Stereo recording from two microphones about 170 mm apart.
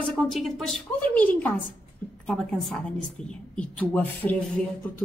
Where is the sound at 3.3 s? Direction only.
5° left (ahead or behind).